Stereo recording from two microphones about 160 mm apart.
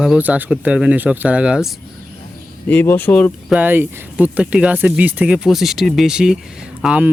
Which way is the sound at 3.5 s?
10° right (ahead or behind).